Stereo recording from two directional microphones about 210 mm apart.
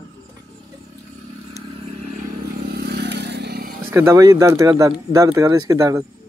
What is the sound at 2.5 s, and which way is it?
Vehicle, 45° right (ahead or behind).